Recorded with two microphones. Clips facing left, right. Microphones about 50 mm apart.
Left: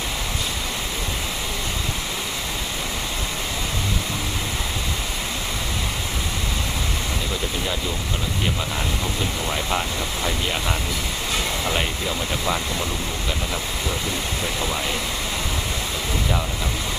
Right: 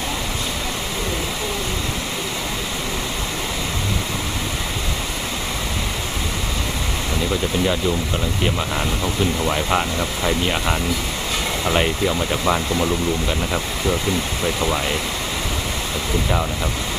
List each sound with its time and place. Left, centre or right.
9.4 s speech: centre